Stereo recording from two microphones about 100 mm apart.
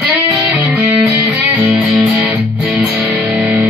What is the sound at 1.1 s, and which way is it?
Music, 15° right (ahead or behind).